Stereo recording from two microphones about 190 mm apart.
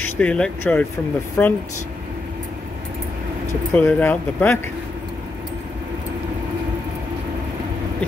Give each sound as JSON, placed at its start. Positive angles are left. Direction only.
{"t": 0.0, "sound": "speech", "side_deg": 5}
{"t": 3.7, "sound": "speech", "side_deg": 10}